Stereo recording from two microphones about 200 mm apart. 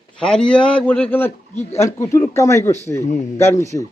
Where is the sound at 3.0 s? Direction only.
35° left (ahead or behind).